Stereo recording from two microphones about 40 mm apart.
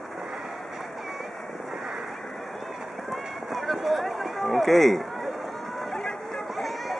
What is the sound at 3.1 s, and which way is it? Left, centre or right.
Run, centre.